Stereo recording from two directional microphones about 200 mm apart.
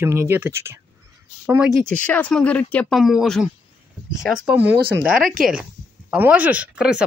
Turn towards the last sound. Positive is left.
turn(degrees=-5)  # may be behind; listen again after turning